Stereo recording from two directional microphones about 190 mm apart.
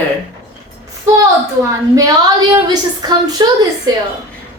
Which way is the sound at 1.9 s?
20° right (ahead or behind).